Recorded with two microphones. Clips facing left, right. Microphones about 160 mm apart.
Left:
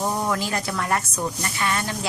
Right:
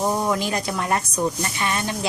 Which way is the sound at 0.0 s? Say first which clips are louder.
Right 3 dB; 20° right (ahead or behind).